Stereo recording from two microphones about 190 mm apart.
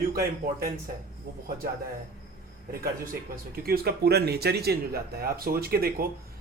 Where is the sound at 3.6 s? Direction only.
55° right (ahead or behind).